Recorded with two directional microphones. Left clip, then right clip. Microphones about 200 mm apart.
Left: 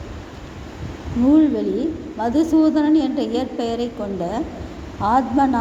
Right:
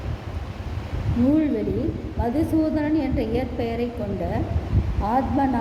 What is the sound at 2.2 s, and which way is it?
A woman's voice, 20° left (ahead or behind).